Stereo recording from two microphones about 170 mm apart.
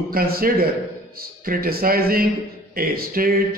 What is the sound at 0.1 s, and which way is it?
A man's voice, 60° right (ahead or behind).